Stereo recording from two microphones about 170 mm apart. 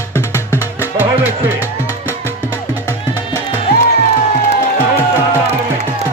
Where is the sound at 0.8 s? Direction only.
10° right (ahead or behind).